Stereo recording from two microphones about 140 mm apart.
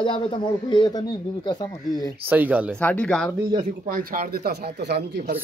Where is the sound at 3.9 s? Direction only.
90° right.